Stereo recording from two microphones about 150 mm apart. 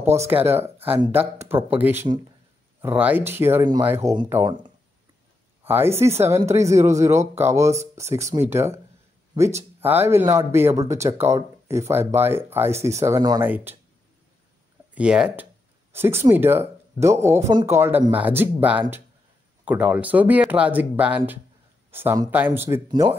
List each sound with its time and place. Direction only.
0.3 s speech: 15° right (ahead or behind)
5.7 s speech: 15° right (ahead or behind)
15.0 s speech: 5° right (ahead or behind)
15.9 s speech: 15° right (ahead or behind)
22.8 s speech: 30° right (ahead or behind)